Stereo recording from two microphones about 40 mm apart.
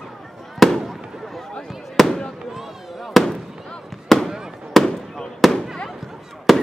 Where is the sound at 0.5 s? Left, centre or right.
Centre.